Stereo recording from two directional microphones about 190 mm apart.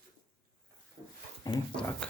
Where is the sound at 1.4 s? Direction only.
20° left (ahead or behind).